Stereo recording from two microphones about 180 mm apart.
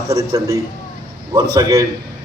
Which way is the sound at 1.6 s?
20° right (ahead or behind).